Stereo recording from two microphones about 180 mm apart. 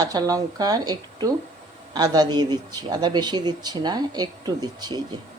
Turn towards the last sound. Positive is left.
turn(degrees=-20)  # may be behind; listen again after turning